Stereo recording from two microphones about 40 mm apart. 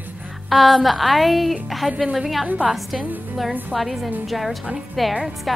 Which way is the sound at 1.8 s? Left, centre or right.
Centre.